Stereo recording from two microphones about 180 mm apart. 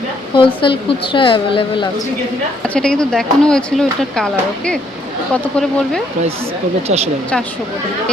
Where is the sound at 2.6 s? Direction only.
5° left (ahead or behind).